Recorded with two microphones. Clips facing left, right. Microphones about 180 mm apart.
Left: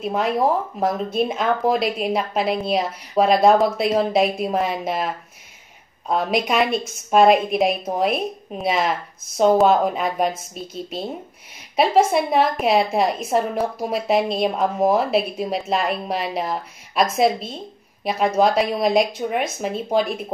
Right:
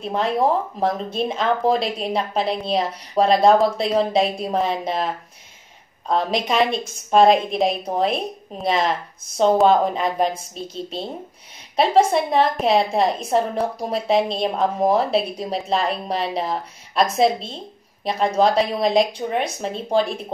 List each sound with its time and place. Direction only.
0.0 s a woman's voice: 5° left (ahead or behind)
11.7 s a woman's voice: 5° left (ahead or behind)